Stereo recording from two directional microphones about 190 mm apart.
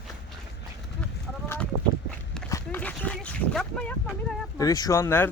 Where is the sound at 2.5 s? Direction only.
10° left (ahead or behind).